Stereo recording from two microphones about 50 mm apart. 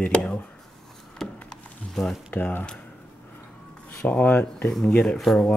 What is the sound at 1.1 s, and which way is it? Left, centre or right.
Wood, centre.